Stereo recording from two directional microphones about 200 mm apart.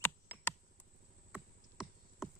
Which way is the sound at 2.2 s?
Centre (ahead or behind).